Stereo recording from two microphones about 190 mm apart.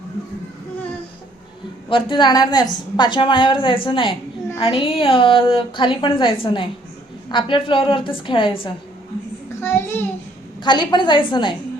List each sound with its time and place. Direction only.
1.9 s a woman's voice: 25° left (ahead or behind)
9.6 s child singing: 10° left (ahead or behind)
10.6 s a woman's voice: 25° left (ahead or behind)